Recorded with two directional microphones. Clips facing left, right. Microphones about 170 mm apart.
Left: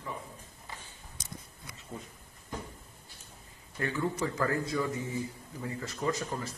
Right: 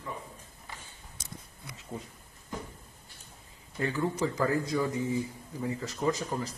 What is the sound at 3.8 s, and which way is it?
Speech, 20° right (ahead or behind).